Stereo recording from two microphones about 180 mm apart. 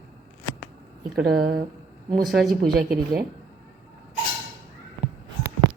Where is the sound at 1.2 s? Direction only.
60° right (ahead or behind).